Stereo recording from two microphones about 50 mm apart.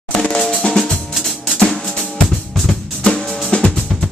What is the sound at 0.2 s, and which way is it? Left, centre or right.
Drum, centre.